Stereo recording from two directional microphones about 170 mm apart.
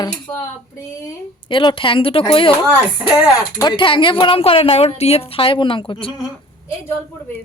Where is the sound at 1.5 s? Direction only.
30° left (ahead or behind).